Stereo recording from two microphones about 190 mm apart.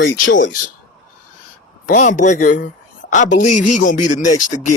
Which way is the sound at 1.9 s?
40° left (ahead or behind).